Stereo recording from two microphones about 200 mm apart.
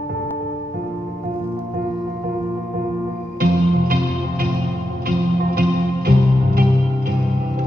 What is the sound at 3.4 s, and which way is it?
Music, 45° right (ahead or behind).